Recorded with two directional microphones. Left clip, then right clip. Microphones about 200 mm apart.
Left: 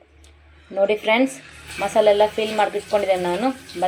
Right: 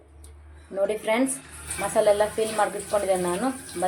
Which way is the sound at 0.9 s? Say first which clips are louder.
Left 6 dB; 10° left (ahead or behind).